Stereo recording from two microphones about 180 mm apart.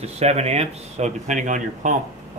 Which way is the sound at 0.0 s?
35° right (ahead or behind).